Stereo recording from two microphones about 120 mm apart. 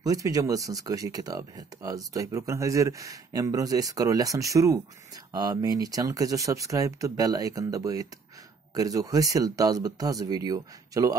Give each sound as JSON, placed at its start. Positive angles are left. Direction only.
{"t": 0.0, "sound": "speech", "side_deg": -30}